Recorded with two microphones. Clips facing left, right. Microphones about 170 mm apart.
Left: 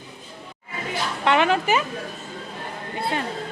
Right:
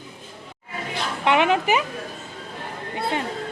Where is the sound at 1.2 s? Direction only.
15° right (ahead or behind).